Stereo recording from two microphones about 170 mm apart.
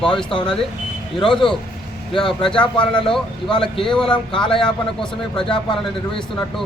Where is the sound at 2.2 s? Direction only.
30° left (ahead or behind).